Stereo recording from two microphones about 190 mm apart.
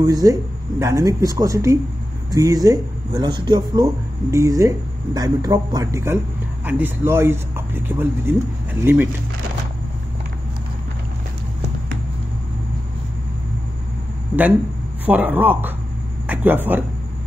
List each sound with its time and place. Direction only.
0.0 s speech: 20° right (ahead or behind)
15.0 s speech: 10° right (ahead or behind)